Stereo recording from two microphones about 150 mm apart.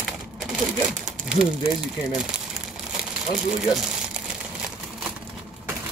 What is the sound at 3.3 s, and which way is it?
Speech, 5° right (ahead or behind).